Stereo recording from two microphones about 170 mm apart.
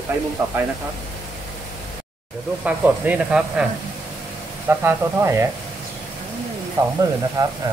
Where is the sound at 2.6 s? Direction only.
10° right (ahead or behind).